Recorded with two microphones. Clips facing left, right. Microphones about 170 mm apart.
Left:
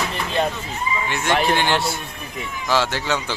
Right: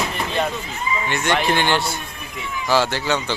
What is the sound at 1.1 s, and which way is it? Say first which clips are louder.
A man's voice: even; centre (ahead or behind).